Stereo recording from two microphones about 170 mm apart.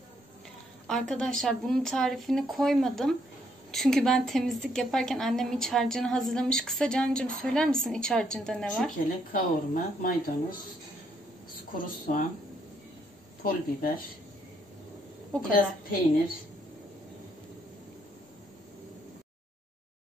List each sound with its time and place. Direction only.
0.8 s a woman's voice: 5° left (ahead or behind)
9.3 s a woman's voice: 55° left (ahead or behind)
13.4 s speech: 60° left (ahead or behind)
15.3 s a woman's voice: 5° left (ahead or behind)